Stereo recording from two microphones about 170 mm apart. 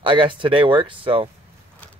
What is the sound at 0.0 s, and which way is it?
Speech, 30° right (ahead or behind).